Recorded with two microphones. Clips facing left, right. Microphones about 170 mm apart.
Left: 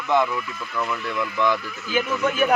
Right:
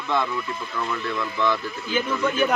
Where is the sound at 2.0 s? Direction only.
10° left (ahead or behind).